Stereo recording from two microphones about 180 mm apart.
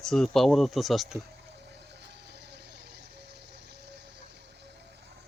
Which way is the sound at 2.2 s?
70° right (ahead or behind).